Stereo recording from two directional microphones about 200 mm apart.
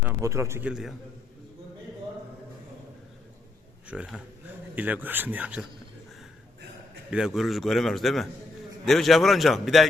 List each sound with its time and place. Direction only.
0.0 s a man's voice: 15° right (ahead or behind)
3.8 s a man's voice: 5° right (ahead or behind)
7.1 s a man's voice: centre (ahead or behind)